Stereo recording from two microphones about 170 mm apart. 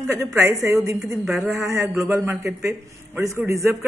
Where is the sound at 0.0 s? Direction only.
15° right (ahead or behind).